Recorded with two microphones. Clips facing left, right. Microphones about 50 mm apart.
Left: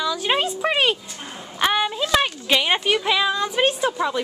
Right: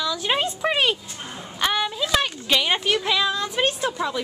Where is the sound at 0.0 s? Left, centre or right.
Centre.